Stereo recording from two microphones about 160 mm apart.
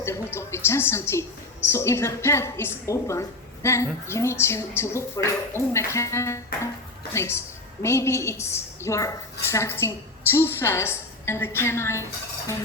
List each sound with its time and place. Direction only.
0.0 s speech: 15° left (ahead or behind)